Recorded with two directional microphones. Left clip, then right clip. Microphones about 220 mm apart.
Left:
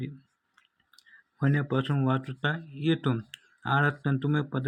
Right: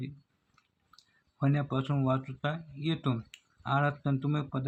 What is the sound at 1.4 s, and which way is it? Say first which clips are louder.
Speech: left 4 dB; 10° left (ahead or behind).